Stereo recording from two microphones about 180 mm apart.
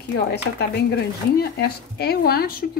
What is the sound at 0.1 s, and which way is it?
Speech, 70° left (ahead or behind).